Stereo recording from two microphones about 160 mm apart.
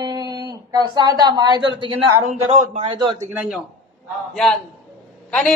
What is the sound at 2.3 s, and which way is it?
Speech, 45° right (ahead or behind).